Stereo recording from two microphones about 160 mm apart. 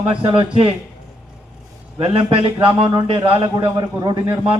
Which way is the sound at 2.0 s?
35° right (ahead or behind).